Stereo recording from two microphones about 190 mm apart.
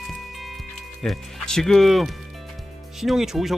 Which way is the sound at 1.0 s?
Centre (ahead or behind).